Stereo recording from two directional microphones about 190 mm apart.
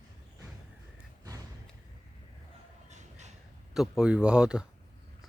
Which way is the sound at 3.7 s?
5° right (ahead or behind).